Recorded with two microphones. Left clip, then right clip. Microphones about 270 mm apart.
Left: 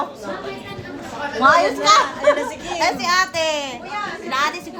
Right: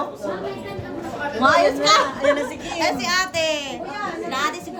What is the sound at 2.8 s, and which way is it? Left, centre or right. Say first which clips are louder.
A child's voice: left 3 dB; centre.